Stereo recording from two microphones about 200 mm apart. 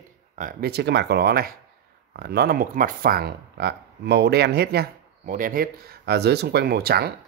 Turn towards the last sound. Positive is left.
turn(degrees=-50)  # may be behind; listen again after turning